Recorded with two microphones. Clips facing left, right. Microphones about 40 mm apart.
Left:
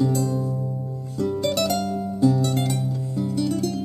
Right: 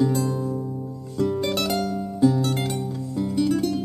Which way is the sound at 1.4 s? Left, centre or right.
Centre.